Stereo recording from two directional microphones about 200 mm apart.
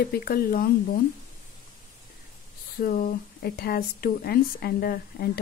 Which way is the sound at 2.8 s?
45° left (ahead or behind).